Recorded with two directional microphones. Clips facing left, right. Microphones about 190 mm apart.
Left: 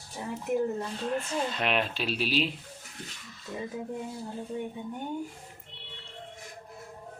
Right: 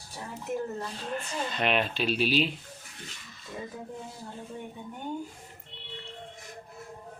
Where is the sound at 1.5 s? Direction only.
Centre (ahead or behind).